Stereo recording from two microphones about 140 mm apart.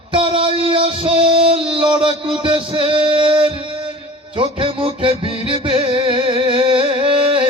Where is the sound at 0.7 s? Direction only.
45° right (ahead or behind).